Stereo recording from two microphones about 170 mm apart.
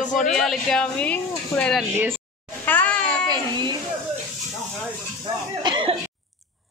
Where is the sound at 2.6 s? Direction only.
10° left (ahead or behind).